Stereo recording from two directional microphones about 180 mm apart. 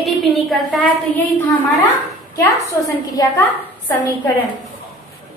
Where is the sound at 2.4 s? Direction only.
20° left (ahead or behind).